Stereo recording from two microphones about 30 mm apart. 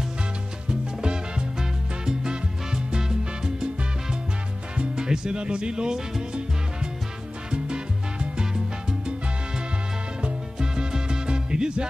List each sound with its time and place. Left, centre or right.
0.7 s music: right
4.9 s music: right
5.4 s speech: right
7.5 s salsa music: right
10.6 s music: right